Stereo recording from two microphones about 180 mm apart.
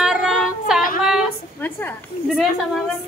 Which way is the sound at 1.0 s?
5° right (ahead or behind).